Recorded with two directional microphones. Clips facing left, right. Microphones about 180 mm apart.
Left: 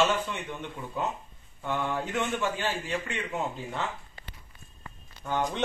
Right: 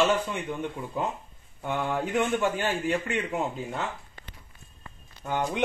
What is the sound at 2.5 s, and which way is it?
Speech, 50° right (ahead or behind).